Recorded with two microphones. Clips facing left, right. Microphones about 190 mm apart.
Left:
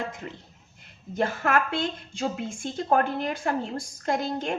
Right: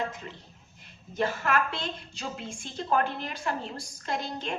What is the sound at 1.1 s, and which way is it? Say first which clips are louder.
A woman's voice: left 3 dB; 50° left (ahead or behind).